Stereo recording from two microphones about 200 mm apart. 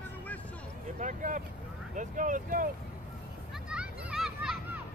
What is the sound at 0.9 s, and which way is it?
Speech, 40° right (ahead or behind).